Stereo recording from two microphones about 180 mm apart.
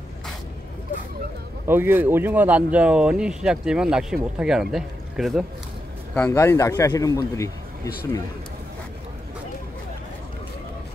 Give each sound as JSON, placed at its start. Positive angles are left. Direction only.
{"t": 1.7, "sound": "speech", "side_deg": -10}
{"t": 6.1, "sound": "speech", "side_deg": 10}